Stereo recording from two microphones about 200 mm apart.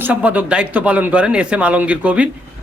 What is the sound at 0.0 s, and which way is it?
A man's voice, 5° right (ahead or behind).